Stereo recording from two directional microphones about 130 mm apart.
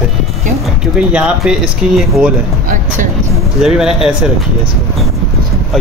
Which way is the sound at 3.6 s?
5° right (ahead or behind).